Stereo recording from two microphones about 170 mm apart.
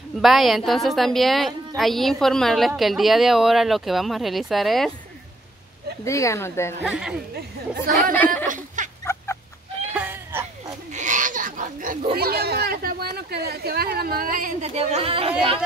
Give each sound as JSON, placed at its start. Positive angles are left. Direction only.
{"t": 0.2, "sound": "a woman's voice", "side_deg": 0}
{"t": 6.0, "sound": "speech", "side_deg": 15}
{"t": 6.8, "sound": "a woman's voice", "side_deg": -5}
{"t": 7.3, "sound": "speech", "side_deg": -55}
{"t": 8.5, "sound": "a sound", "side_deg": -50}
{"t": 9.9, "sound": "a sound", "side_deg": -10}
{"t": 10.9, "sound": "a sound", "side_deg": -45}
{"t": 12.2, "sound": "speech", "side_deg": -65}
{"t": 14.6, "sound": "speech", "side_deg": -40}